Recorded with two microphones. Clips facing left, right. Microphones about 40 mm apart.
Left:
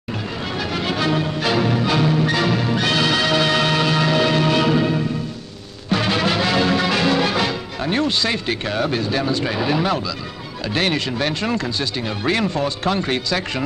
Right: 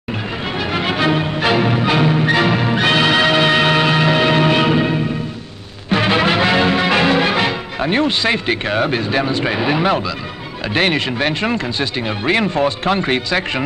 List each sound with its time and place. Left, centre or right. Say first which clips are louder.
0.5 s music: right 4 dB; right
10.7 s speech: right 4 dB; right